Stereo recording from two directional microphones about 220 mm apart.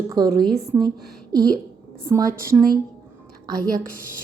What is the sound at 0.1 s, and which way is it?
A woman's voice, 15° right (ahead or behind).